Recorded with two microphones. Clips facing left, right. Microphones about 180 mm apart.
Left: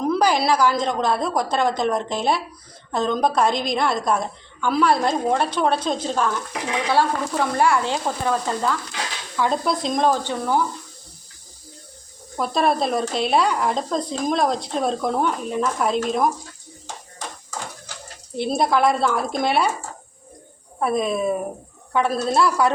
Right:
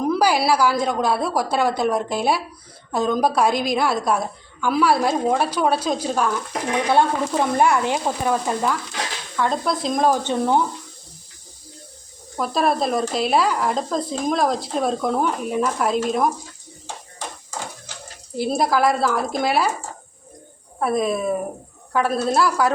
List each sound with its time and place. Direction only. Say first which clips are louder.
0.0 s a woman's voice: right 1 dB; 10° right (ahead or behind)
6.8 s a woman's voice: right 1 dB; 20° right (ahead or behind)
9.3 s speech: left 1 dB; 5° left (ahead or behind)
10.2 s speech: right 3 dB; 20° right (ahead or behind)
12.4 s speech: even; centre (ahead or behind)
18.3 s speech: even; 5° right (ahead or behind)
20.7 s speech: right 1 dB; centre (ahead or behind)